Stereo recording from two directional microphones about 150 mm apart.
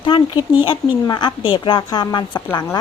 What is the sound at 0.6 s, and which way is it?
Speech, 30° left (ahead or behind).